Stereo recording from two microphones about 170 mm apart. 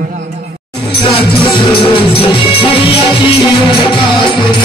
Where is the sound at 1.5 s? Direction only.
30° left (ahead or behind).